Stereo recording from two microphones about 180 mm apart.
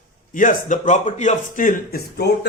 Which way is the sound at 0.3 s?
45° left (ahead or behind).